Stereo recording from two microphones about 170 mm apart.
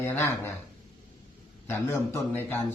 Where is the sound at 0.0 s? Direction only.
15° left (ahead or behind).